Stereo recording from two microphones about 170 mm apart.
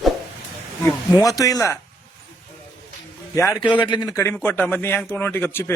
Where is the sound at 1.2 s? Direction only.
20° left (ahead or behind).